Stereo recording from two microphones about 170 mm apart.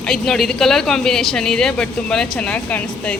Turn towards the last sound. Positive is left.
turn(degrees=5)  # may be behind; listen again after turning